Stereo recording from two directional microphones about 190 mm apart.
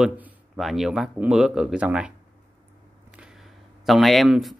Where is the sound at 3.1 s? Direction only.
5° right (ahead or behind).